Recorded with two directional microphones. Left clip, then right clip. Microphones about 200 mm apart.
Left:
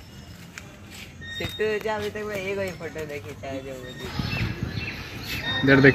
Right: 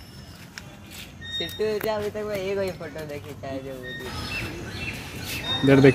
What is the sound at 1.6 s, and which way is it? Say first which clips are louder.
Speech: even; 50° right (ahead or behind).